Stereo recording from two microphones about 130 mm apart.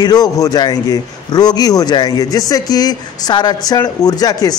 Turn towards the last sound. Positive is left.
turn(degrees=30)  # may be behind; listen again after turning